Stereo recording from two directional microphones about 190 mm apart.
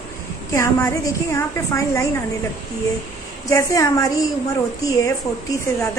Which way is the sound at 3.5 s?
15° left (ahead or behind).